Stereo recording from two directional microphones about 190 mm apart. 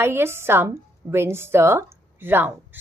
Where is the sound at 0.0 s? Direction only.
10° right (ahead or behind).